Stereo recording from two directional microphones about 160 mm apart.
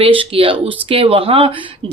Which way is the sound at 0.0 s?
35° right (ahead or behind).